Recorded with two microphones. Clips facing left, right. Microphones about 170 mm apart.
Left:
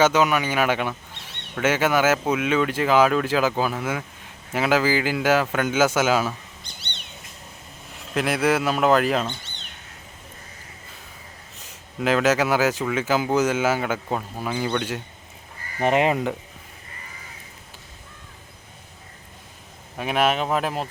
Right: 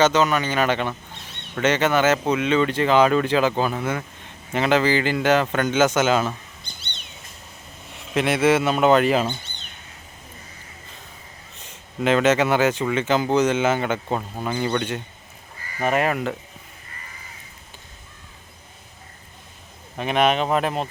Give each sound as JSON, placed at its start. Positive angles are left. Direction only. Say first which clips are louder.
{"t": 0.0, "sound": "speech", "louder": "even", "side_deg": 10}
{"t": 6.6, "sound": "bird", "louder": "even", "side_deg": 75}
{"t": 7.9, "sound": "speech", "louder": "right 2 dB", "side_deg": 0}
{"t": 11.5, "sound": "speech", "louder": "right 2 dB", "side_deg": 0}
{"t": 15.8, "sound": "speech", "louder": "left 2 dB", "side_deg": 25}
{"t": 20.0, "sound": "speech", "louder": "right 2 dB", "side_deg": 5}